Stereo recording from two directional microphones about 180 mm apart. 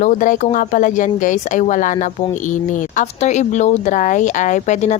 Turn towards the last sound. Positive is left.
turn(degrees=40)  # may be behind; listen again after turning